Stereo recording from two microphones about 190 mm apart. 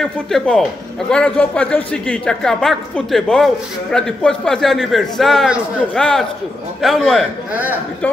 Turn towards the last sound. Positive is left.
turn(degrees=-10)  # may be behind; listen again after turning